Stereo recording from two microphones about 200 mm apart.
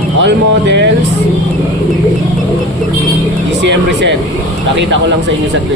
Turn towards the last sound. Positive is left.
turn(degrees=-65)  # may be behind; listen again after turning